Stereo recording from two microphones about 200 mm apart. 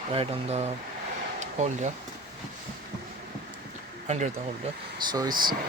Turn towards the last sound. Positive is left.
turn(degrees=-20)  # may be behind; listen again after turning